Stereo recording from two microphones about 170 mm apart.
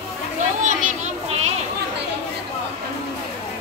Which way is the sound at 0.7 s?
45° right (ahead or behind).